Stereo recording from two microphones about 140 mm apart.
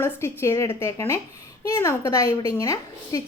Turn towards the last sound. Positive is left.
turn(degrees=25)  # may be behind; listen again after turning